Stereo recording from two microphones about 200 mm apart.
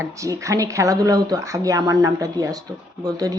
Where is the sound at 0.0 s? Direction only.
15° right (ahead or behind).